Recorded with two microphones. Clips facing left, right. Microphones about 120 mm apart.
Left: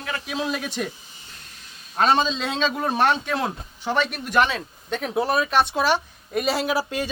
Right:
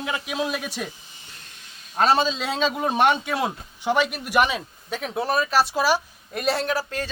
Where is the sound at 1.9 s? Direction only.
Centre (ahead or behind).